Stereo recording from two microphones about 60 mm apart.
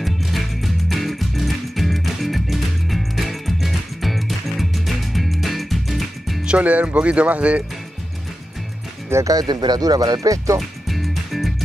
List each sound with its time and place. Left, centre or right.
0.0 s music: centre
6.4 s speech: right
9.1 s speech: right
10.9 s music: centre